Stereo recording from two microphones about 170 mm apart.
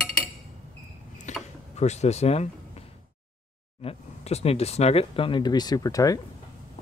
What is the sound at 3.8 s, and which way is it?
Speech, 35° left (ahead or behind).